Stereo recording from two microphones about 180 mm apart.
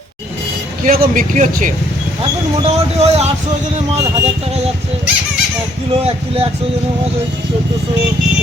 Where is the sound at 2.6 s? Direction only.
35° right (ahead or behind).